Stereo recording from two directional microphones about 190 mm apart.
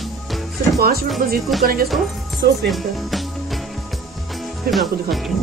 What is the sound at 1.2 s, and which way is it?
Music, 50° right (ahead or behind).